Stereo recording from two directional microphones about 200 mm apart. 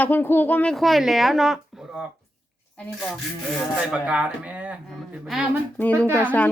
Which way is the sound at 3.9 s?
5° right (ahead or behind).